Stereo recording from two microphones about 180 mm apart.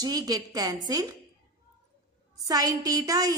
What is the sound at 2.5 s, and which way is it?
Speech, 20° right (ahead or behind).